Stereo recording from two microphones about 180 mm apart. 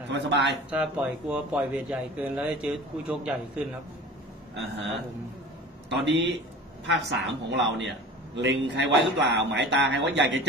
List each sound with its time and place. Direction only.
0.1 s speech: 85° right
0.7 s speech: 5° right (ahead or behind)
5.9 s a man's voice: 75° right (ahead or behind)